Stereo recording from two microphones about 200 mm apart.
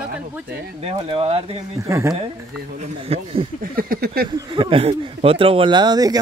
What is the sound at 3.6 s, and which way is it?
Speech, 45° right (ahead or behind).